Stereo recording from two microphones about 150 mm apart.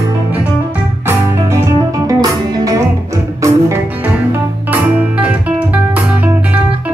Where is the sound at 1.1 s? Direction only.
20° right (ahead or behind).